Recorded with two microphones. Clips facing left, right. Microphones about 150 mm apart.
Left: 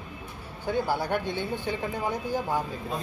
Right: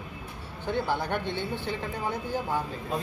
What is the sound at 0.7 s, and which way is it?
Speech, 10° left (ahead or behind).